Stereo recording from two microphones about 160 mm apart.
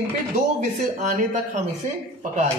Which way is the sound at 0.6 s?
50° right (ahead or behind).